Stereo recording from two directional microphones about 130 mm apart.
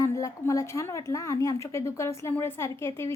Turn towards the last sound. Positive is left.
turn(degrees=20)  # may be behind; listen again after turning